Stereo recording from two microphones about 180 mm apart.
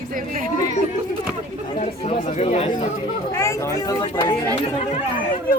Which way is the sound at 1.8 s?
35° left (ahead or behind).